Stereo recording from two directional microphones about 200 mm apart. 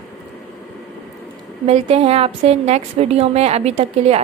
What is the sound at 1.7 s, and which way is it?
A woman's voice, 30° right (ahead or behind).